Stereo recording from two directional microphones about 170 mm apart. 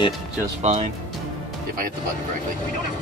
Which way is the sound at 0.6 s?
40° right (ahead or behind).